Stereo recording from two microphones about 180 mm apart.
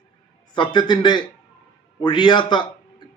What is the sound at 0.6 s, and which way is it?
Speech, 25° left (ahead or behind).